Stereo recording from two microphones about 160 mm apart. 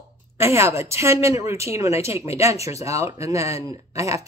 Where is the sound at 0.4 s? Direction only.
15° right (ahead or behind).